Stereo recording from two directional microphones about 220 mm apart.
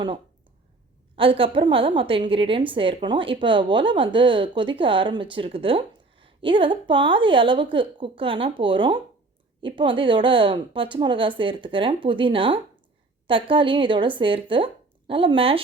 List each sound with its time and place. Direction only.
1.1 s a woman's voice: 25° right (ahead or behind)